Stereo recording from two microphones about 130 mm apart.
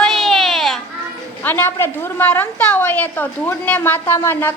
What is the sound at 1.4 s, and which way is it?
A woman's voice, 15° left (ahead or behind).